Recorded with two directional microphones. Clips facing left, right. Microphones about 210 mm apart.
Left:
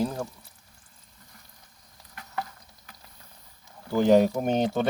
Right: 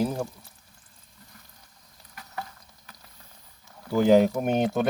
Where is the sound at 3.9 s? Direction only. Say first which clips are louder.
Right 1 dB; 10° right (ahead or behind).